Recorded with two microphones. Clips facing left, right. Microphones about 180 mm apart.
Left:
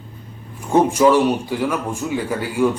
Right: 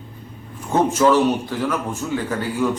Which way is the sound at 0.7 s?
10° left (ahead or behind).